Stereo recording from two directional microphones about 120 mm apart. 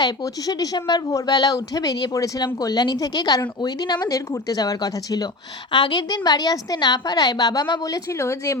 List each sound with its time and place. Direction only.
0.0 s speech: 30° left (ahead or behind)